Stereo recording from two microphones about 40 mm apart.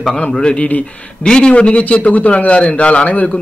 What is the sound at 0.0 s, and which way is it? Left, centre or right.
A man's voice, left.